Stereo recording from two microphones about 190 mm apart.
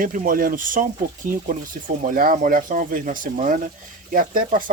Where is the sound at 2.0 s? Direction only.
45° right (ahead or behind).